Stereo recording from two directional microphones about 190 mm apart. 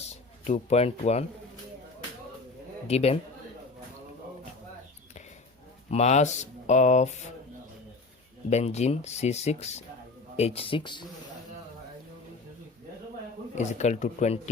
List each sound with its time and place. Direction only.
0.0 s speech: 35° left (ahead or behind)
2.8 s speech: 35° left (ahead or behind)
5.9 s speech: 35° left (ahead or behind)
8.4 s speech: 35° left (ahead or behind)
13.6 s speech: 35° left (ahead or behind)